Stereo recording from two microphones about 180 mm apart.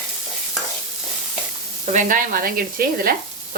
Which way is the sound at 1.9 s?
45° right (ahead or behind).